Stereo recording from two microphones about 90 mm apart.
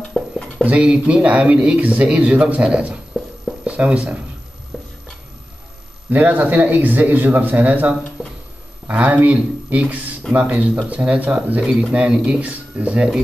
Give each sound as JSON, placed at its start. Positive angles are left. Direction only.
{"t": 0.2, "sound": "stir", "side_deg": 0}
{"t": 0.7, "sound": "a man's voice", "side_deg": -10}
{"t": 3.4, "sound": "a sound", "side_deg": -15}
{"t": 4.7, "sound": "stir", "side_deg": 0}
{"t": 6.0, "sound": "a man's voice", "side_deg": -20}
{"t": 8.2, "sound": "a sound", "side_deg": -5}
{"t": 8.8, "sound": "a man's voice", "side_deg": -15}
{"t": 11.6, "sound": "speech", "side_deg": 0}
{"t": 11.9, "sound": "a man's voice", "side_deg": -10}